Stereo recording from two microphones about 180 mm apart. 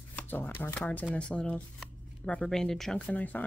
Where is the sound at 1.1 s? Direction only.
5° left (ahead or behind).